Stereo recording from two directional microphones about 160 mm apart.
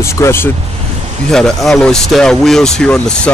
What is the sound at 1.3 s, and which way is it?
Speech, 5° left (ahead or behind).